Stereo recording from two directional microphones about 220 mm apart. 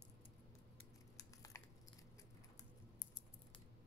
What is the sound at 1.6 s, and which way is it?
Biting, 15° left (ahead or behind).